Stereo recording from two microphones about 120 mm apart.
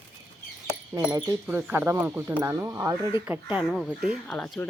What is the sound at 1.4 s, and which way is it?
Speech, 15° right (ahead or behind).